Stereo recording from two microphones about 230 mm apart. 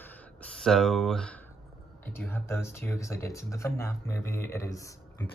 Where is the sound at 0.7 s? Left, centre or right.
Centre.